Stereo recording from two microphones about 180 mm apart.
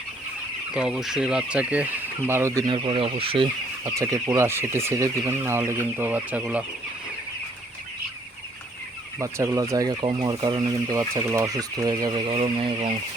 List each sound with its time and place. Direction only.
0.7 s speech: 5° right (ahead or behind)
2.6 s speech: 25° right (ahead or behind)
3.8 s speech: 15° right (ahead or behind)
9.1 s speech: 15° right (ahead or behind)